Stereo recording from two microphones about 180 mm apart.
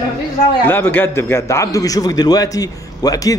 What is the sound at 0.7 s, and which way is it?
A man's voice, 10° left (ahead or behind).